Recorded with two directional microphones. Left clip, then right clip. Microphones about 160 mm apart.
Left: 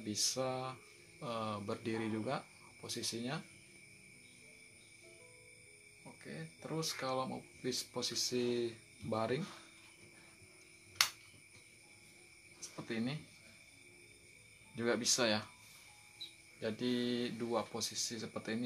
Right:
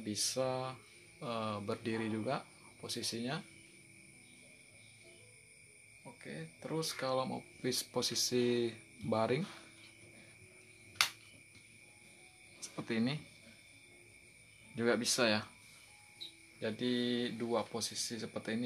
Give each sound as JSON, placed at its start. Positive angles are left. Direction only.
{"t": 0.0, "sound": "speech", "side_deg": -15}
{"t": 6.2, "sound": "speech", "side_deg": -15}
{"t": 12.5, "sound": "a sound", "side_deg": -30}
{"t": 14.8, "sound": "speech", "side_deg": -20}
{"t": 16.5, "sound": "speech", "side_deg": -15}